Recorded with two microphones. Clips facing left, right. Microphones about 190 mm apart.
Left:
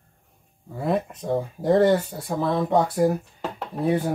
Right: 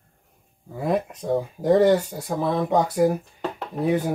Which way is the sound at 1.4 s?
5° right (ahead or behind).